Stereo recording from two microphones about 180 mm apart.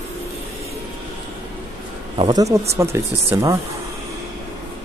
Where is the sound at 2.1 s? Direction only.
30° right (ahead or behind).